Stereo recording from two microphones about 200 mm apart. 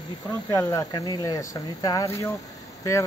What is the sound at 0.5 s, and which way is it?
Speech, 15° left (ahead or behind).